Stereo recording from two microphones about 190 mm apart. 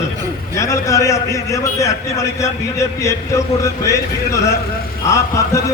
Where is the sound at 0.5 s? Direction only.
15° left (ahead or behind).